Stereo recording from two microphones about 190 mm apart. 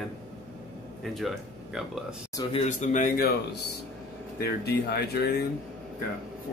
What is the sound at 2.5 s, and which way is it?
Speech, 35° left (ahead or behind).